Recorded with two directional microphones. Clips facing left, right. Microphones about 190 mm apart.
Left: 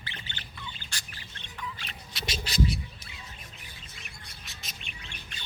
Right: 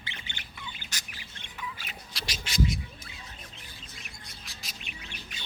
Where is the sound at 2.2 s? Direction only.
35° left (ahead or behind).